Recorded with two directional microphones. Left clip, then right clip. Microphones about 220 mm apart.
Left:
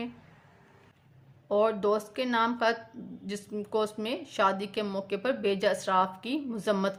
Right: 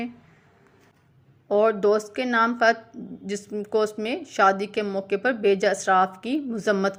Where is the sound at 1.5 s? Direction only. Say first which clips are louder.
Right 6 dB; 20° right (ahead or behind).